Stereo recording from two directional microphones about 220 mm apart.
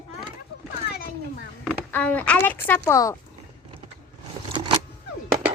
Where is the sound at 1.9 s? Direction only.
10° left (ahead or behind).